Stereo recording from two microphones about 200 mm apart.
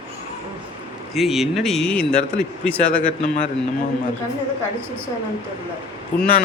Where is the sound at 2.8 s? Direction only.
40° left (ahead or behind).